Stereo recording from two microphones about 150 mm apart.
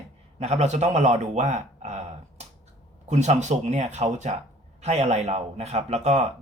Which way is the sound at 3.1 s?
50° right (ahead or behind).